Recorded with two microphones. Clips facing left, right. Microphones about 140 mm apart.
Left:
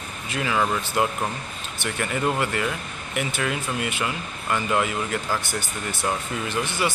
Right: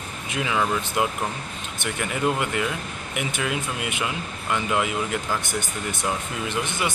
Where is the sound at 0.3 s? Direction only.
10° right (ahead or behind).